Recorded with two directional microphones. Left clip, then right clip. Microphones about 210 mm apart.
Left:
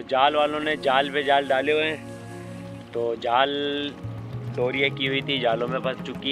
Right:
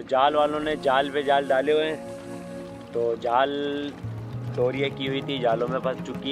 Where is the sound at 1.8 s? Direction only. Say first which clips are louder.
Left 1 dB; centre (ahead or behind).